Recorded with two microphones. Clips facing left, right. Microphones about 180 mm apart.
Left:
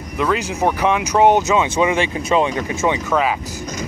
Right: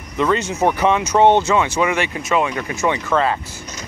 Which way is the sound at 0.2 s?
5° left (ahead or behind).